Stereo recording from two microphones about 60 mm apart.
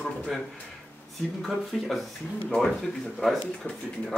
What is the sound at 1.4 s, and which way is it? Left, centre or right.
Speech, centre.